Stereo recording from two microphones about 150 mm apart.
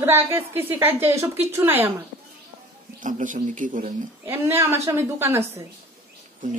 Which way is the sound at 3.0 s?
60° right (ahead or behind).